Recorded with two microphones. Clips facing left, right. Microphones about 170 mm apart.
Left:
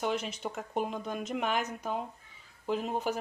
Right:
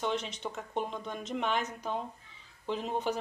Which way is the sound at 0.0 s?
5° left (ahead or behind).